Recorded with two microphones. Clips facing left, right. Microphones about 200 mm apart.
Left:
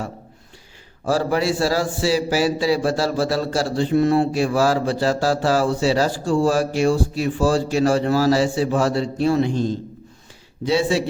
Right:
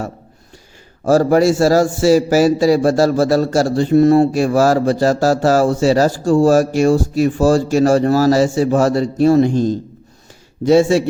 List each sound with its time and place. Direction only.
1.0 s a man's voice: 45° right (ahead or behind)